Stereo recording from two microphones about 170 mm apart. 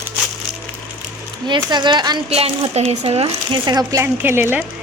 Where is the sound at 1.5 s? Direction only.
25° right (ahead or behind).